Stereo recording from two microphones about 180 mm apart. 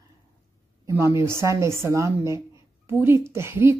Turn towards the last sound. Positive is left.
turn(degrees=-15)  # may be behind; listen again after turning